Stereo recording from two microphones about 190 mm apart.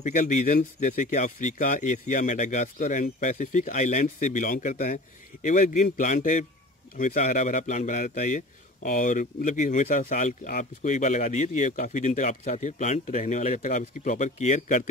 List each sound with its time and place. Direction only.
0.0 s speech: 40° left (ahead or behind)